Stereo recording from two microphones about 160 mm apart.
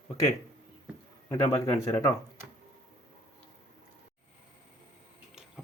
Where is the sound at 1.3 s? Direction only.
15° left (ahead or behind).